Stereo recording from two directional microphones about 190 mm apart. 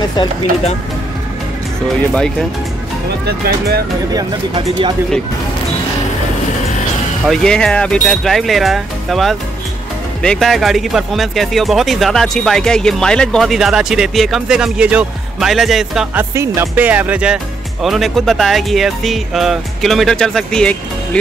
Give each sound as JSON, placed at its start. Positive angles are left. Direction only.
{"t": 3.3, "sound": "speech", "side_deg": -55}
{"t": 4.1, "sound": "speech", "side_deg": -20}
{"t": 7.2, "sound": "speech", "side_deg": 5}